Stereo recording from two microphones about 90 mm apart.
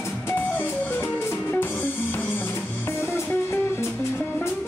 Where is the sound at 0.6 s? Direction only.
25° left (ahead or behind).